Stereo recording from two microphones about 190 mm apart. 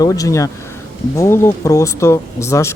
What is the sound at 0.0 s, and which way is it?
Speech, 15° left (ahead or behind).